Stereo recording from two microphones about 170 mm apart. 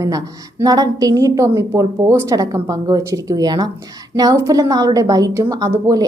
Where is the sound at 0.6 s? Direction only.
20° right (ahead or behind).